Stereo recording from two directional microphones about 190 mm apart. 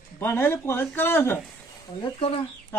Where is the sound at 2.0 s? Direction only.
30° left (ahead or behind).